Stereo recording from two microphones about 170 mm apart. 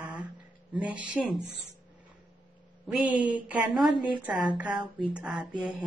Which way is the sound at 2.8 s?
5° right (ahead or behind).